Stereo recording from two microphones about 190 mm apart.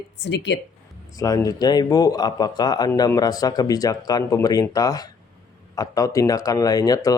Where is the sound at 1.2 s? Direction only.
15° left (ahead or behind).